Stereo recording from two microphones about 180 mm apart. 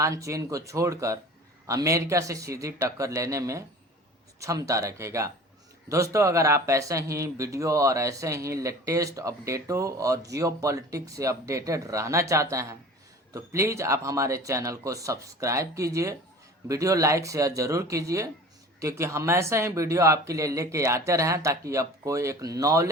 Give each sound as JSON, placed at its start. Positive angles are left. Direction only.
{"t": 0.0, "sound": "speech", "side_deg": -15}